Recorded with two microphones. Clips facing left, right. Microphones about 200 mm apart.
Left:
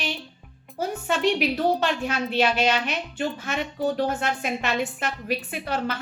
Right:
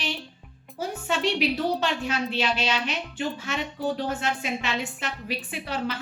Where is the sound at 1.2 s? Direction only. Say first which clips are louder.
Left 2 dB; 50° left (ahead or behind).